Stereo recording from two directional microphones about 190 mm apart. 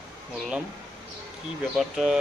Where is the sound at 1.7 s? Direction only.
Centre (ahead or behind).